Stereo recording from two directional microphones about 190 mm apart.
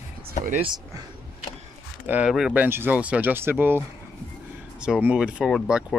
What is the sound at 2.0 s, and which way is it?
Speech, 5° right (ahead or behind).